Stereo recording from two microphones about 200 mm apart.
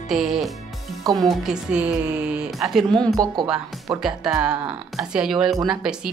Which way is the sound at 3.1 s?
20° right (ahead or behind).